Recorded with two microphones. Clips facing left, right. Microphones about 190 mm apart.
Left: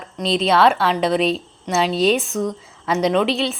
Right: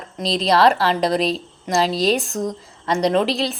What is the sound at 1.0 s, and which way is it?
Speech, 40° right (ahead or behind).